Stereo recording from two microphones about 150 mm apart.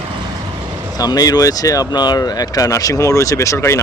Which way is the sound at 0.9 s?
25° left (ahead or behind).